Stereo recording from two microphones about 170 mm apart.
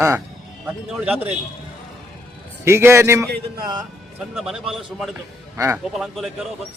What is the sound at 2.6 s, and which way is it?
Speech, 15° right (ahead or behind).